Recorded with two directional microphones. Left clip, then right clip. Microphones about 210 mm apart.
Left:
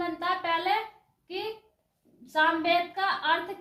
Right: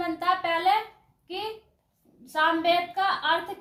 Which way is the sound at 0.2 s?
20° right (ahead or behind).